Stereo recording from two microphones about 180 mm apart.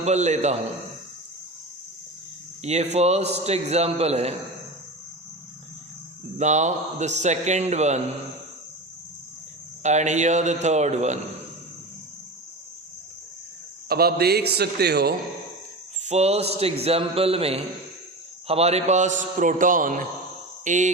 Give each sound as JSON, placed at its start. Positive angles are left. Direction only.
{"t": 0.0, "sound": "a man's voice", "side_deg": -40}
{"t": 2.6, "sound": "a man's voice", "side_deg": -40}
{"t": 6.3, "sound": "a man's voice", "side_deg": -40}
{"t": 9.8, "sound": "a man's voice", "side_deg": -40}
{"t": 13.8, "sound": "a man's voice", "side_deg": -60}
{"t": 16.0, "sound": "a man's voice", "side_deg": -35}